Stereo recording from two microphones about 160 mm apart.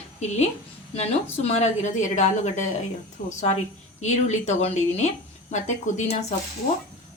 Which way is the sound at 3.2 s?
60° left (ahead or behind).